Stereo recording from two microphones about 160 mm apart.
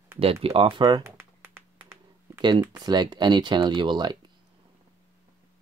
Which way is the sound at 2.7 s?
25° right (ahead or behind).